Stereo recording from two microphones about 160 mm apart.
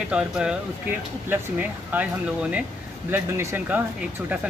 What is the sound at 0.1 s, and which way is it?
Speech, 5° right (ahead or behind).